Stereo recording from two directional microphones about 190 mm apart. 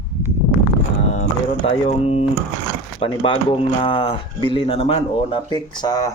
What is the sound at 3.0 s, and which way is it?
Speech, 25° left (ahead or behind).